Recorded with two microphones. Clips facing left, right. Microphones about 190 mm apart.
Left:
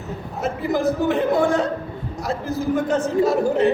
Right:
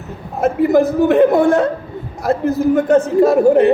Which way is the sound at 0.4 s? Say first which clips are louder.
Right 8 dB; 60° right (ahead or behind).